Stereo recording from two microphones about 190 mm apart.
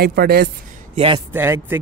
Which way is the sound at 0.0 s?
55° right (ahead or behind).